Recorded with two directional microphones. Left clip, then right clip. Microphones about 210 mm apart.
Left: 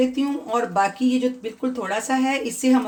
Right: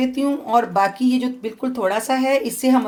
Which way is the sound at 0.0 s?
40° right (ahead or behind).